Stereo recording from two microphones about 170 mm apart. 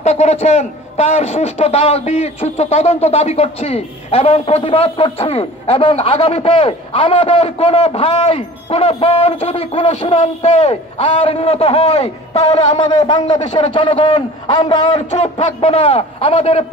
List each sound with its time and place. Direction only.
0.0 s a man's voice: 40° left (ahead or behind)
12.8 s a man's voice: 25° left (ahead or behind)
13.4 s a man's voice: 35° left (ahead or behind)
15.0 s a man's voice: 40° left (ahead or behind)